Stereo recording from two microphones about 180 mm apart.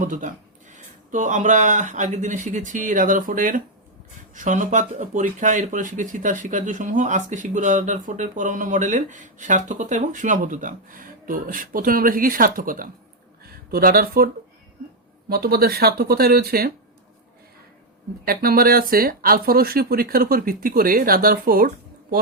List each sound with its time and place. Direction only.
0.0 s speech: 45° right (ahead or behind)
15.3 s speech: 60° right (ahead or behind)
18.3 s speech: 55° right (ahead or behind)